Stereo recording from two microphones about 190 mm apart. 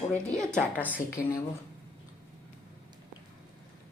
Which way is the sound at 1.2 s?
15° left (ahead or behind).